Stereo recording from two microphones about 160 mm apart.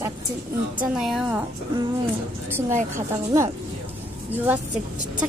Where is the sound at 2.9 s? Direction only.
15° right (ahead or behind).